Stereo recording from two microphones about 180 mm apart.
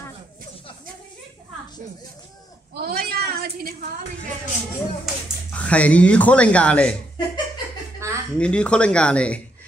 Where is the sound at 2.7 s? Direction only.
60° right (ahead or behind).